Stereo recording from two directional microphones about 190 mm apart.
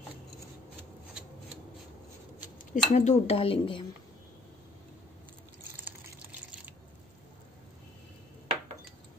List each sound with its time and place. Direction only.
2.7 s speech: 40° left (ahead or behind)
5.9 s water: 5° right (ahead or behind)